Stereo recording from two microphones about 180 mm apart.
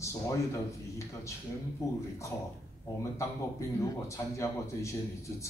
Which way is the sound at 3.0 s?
15° left (ahead or behind).